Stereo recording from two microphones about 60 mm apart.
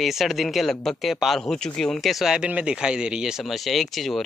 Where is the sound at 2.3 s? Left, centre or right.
Centre.